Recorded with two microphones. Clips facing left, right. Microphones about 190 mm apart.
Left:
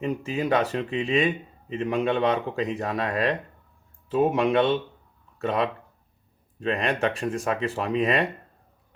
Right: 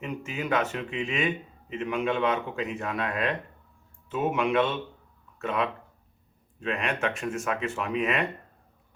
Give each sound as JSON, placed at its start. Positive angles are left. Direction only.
{"t": 0.0, "sound": "speech", "side_deg": 35}